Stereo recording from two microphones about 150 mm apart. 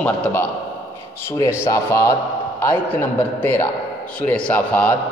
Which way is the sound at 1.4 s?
20° left (ahead or behind).